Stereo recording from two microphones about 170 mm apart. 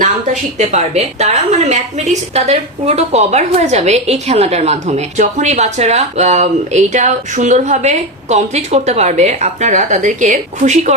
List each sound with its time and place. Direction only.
0.7 s a woman's voice: 40° right (ahead or behind)